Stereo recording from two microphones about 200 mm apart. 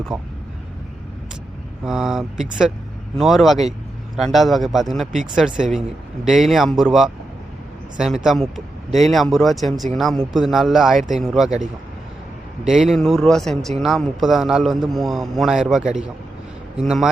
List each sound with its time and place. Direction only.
0.1 s a man's voice: centre (ahead or behind)
1.8 s a man's voice: 5° right (ahead or behind)
12.6 s a man's voice: centre (ahead or behind)